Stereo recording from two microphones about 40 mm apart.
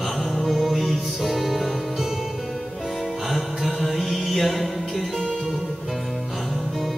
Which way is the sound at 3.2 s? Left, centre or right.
Centre.